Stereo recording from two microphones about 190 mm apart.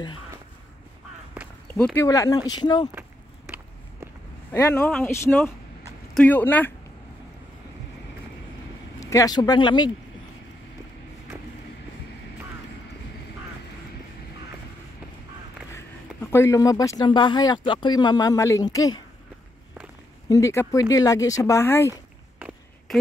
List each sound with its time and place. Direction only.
2.0 s speech: 20° left (ahead or behind)
2.9 s a sound: 10° right (ahead or behind)
4.5 s speech: 15° left (ahead or behind)
9.0 s speech: 15° left (ahead or behind)
16.2 s speech: 15° left (ahead or behind)
20.2 s speech: 15° left (ahead or behind)
22.9 s speech: centre (ahead or behind)